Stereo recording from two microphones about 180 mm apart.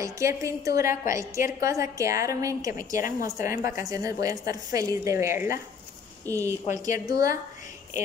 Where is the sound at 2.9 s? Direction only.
50° left (ahead or behind).